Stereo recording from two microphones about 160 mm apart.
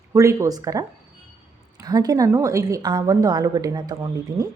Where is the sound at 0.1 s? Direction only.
20° right (ahead or behind).